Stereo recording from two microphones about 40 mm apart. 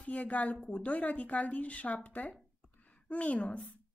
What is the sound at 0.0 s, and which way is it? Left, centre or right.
A woman's voice, left.